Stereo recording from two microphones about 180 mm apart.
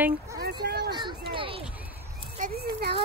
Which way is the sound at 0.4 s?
65° right (ahead or behind).